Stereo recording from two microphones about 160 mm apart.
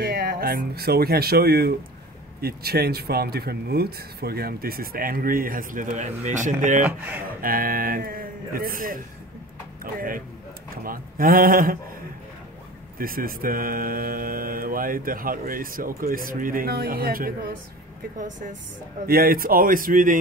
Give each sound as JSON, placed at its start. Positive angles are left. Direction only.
{"t": 0.0, "sound": "speech", "side_deg": -70}
{"t": 6.8, "sound": "speech", "side_deg": -10}
{"t": 7.2, "sound": "speech", "side_deg": -65}
{"t": 12.9, "sound": "speech", "side_deg": -65}
{"t": 18.2, "sound": "a woman's voice", "side_deg": -55}
{"t": 19.0, "sound": "speech", "side_deg": -65}